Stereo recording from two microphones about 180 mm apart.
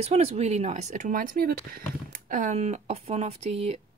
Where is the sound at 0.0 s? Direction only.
35° right (ahead or behind).